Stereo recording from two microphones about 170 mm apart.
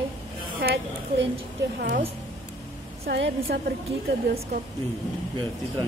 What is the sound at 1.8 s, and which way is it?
Speech, 65° right (ahead or behind).